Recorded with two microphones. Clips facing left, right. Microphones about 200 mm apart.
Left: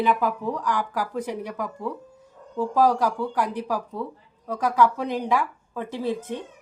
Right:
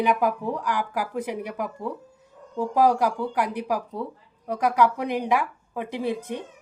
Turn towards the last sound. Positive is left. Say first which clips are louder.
# even
turn(degrees=-15)  # may be behind; listen again after turning